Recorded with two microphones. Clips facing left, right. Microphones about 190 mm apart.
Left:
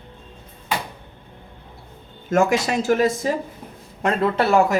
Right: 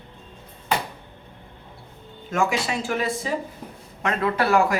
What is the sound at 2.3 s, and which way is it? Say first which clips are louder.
Speech: left 5 dB; 45° left (ahead or behind).